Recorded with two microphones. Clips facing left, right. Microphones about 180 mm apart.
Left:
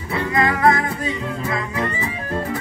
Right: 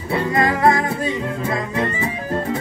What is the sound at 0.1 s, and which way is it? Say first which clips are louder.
Music: right 2 dB; 30° right (ahead or behind).